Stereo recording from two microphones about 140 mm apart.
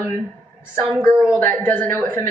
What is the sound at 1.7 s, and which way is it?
Speech, 15° left (ahead or behind).